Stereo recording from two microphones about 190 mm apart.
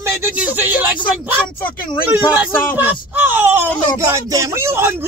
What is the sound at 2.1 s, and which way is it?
Speech, 10° right (ahead or behind).